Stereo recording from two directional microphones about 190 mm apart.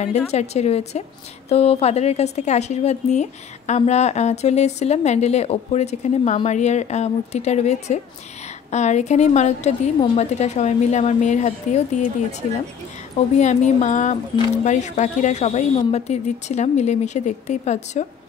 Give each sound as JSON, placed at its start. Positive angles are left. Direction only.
{"t": 0.3, "sound": "a woman's voice", "side_deg": 35}
{"t": 13.4, "sound": "a woman's voice", "side_deg": 40}